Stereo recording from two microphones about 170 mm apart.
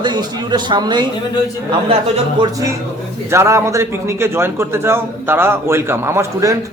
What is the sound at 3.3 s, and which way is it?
A man's voice, 15° right (ahead or behind).